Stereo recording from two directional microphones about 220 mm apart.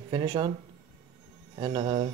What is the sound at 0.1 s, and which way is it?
Speech, 20° right (ahead or behind).